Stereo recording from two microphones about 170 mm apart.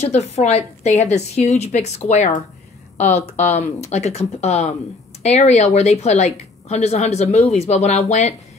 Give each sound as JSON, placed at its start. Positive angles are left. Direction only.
{"t": 0.1, "sound": "a woman's voice", "side_deg": 40}